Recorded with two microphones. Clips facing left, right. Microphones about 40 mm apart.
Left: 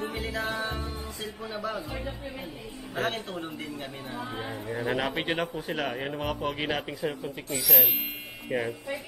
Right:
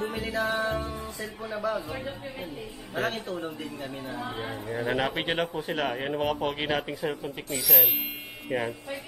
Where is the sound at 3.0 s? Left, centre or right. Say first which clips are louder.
Right 1 dB; left.